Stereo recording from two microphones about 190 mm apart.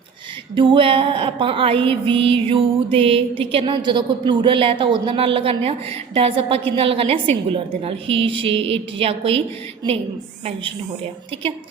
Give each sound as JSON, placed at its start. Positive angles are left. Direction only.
{"t": 0.5, "sound": "speech", "side_deg": -25}